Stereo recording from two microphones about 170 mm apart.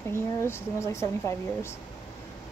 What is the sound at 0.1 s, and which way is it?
A woman's voice, 15° left (ahead or behind).